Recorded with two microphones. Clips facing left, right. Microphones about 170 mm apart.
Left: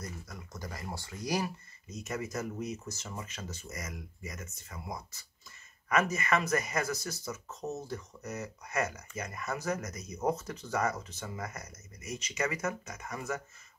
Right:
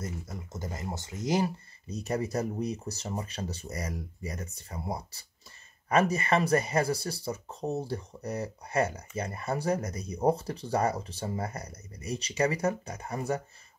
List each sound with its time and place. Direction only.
0.0 s speech: 25° right (ahead or behind)